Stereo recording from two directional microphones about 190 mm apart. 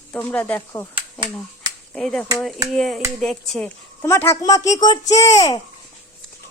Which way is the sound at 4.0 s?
10° left (ahead or behind).